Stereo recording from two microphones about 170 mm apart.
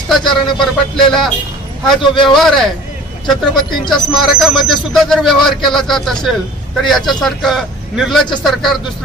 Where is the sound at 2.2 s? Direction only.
Centre (ahead or behind).